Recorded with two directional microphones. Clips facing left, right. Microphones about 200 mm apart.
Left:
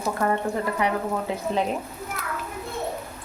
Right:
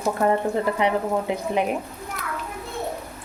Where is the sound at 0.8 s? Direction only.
20° right (ahead or behind).